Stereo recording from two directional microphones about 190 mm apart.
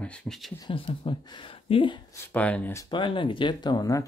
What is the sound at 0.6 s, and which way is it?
Speech, 30° left (ahead or behind).